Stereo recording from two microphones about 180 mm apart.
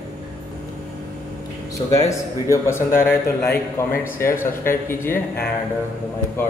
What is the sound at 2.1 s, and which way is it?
A man's voice, 15° left (ahead or behind).